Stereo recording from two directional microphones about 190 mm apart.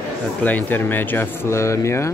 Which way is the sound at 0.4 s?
10° left (ahead or behind).